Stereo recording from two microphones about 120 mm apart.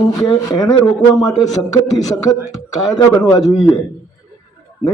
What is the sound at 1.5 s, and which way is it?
Speech, 30° left (ahead or behind).